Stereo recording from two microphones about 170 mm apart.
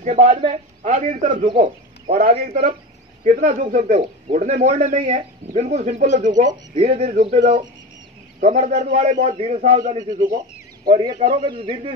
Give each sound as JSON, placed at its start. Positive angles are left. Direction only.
{"t": 0.0, "sound": "a man's voice", "side_deg": -45}
{"t": 10.9, "sound": "a man's voice", "side_deg": -25}